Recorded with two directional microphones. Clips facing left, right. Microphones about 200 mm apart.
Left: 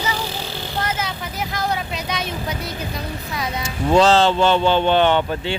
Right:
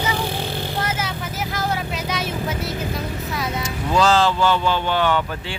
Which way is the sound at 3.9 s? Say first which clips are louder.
Left 3 dB; 25° left (ahead or behind).